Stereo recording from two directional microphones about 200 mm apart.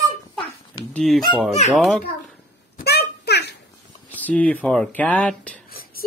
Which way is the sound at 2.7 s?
55° left (ahead or behind).